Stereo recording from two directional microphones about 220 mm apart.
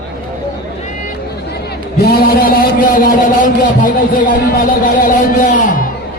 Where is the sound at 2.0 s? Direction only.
40° left (ahead or behind).